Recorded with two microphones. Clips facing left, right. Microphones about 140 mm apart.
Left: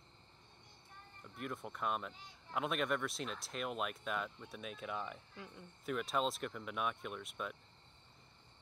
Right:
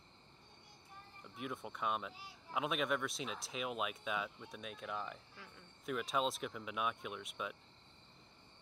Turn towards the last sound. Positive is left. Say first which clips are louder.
# even
turn(degrees=0)  # may be behind; listen again after turning